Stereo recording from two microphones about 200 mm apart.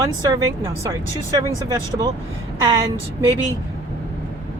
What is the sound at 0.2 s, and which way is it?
Speech, 20° right (ahead or behind).